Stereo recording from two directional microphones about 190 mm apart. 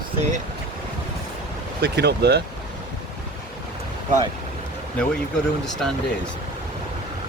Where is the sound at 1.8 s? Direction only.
60° right (ahead or behind).